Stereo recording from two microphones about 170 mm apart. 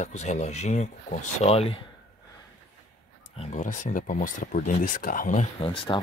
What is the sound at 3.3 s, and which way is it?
Speech, 50° left (ahead or behind).